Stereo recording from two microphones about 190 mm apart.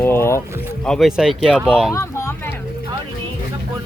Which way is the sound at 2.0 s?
15° left (ahead or behind).